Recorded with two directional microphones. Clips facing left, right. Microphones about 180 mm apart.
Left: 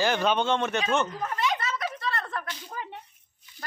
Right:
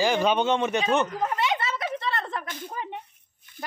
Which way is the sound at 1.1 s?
30° right (ahead or behind).